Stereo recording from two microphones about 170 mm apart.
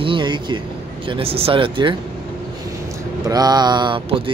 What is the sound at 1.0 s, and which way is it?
Speech, 30° right (ahead or behind).